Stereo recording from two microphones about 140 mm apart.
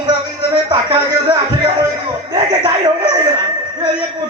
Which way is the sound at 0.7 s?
35° right (ahead or behind).